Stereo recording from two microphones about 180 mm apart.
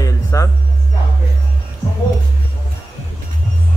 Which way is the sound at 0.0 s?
15° left (ahead or behind).